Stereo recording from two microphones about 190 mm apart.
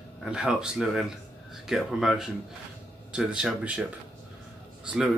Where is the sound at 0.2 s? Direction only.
5° right (ahead or behind).